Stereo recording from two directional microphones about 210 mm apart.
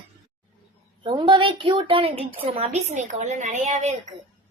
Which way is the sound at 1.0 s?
25° right (ahead or behind).